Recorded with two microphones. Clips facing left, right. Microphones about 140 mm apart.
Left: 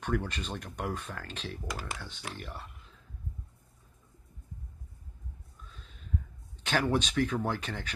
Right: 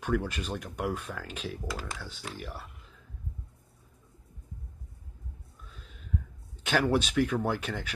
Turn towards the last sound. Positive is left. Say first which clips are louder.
# right 3 dB
turn(degrees=-10)  # may be behind; listen again after turning